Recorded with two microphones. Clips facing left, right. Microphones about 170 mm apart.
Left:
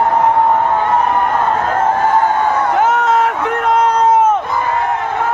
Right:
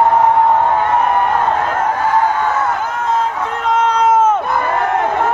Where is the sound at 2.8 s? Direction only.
75° left (ahead or behind).